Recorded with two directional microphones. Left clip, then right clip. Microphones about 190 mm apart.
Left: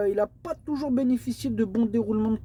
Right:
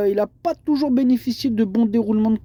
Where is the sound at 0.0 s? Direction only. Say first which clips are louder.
Right 6 dB; 45° right (ahead or behind).